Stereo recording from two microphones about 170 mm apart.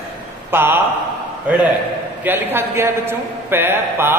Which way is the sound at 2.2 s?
10° right (ahead or behind).